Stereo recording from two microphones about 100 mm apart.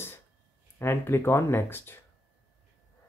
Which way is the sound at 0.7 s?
25° left (ahead or behind).